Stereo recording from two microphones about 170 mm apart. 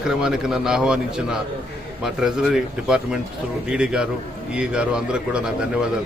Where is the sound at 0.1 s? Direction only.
5° right (ahead or behind).